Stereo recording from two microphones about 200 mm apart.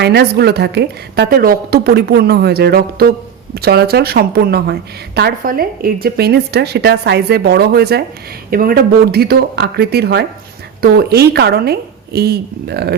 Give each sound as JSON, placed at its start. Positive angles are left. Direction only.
{"t": 0.0, "sound": "a woman's voice", "side_deg": -55}